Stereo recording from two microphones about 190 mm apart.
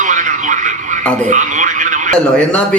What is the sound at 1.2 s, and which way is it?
Radio, 40° right (ahead or behind).